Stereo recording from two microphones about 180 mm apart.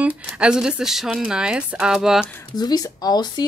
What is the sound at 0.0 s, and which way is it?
Speech, 5° right (ahead or behind).